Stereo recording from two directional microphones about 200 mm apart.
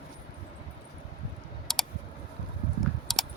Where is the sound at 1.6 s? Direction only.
Centre (ahead or behind).